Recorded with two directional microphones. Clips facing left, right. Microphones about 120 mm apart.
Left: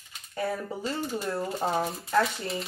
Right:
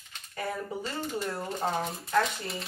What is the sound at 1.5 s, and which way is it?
Speech, 10° left (ahead or behind).